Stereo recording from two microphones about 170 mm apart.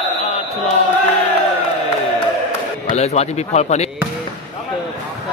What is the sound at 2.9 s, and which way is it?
Speech, 40° left (ahead or behind).